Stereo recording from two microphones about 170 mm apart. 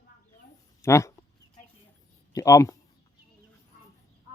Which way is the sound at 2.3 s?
20° left (ahead or behind).